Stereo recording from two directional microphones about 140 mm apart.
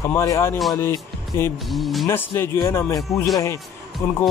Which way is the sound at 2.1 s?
15° left (ahead or behind).